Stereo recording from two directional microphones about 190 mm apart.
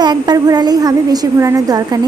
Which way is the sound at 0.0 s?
20° right (ahead or behind).